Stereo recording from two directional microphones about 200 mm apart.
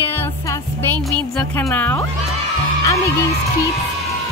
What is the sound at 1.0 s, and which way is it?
Speech, 5° left (ahead or behind).